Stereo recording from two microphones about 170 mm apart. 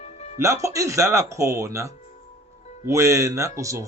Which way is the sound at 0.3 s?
15° right (ahead or behind).